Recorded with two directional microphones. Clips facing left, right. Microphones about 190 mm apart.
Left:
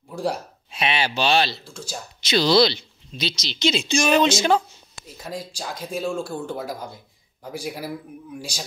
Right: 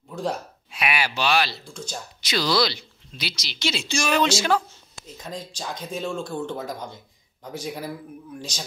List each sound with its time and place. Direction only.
0.1 s speech: 10° left (ahead or behind)
0.7 s a woman's voice: 25° left (ahead or behind)
1.6 s speech: 5° left (ahead or behind)
2.2 s a woman's voice: 25° left (ahead or behind)
5.0 s speech: 5° left (ahead or behind)